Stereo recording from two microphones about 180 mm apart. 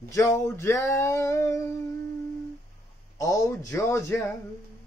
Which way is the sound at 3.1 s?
20° left (ahead or behind).